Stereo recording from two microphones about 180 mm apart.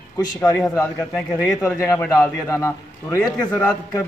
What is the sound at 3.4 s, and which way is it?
Speech, 5° left (ahead or behind).